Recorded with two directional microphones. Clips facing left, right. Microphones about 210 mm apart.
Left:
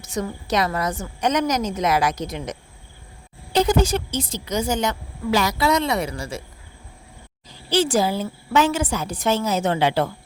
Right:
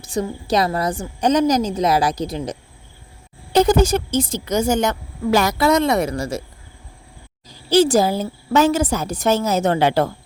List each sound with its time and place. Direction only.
0.0 s a woman's voice: 30° right (ahead or behind)
3.5 s a woman's voice: 45° right (ahead or behind)
7.4 s a woman's voice: 40° right (ahead or behind)